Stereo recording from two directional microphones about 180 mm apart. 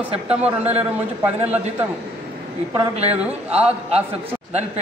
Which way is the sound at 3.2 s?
5° right (ahead or behind).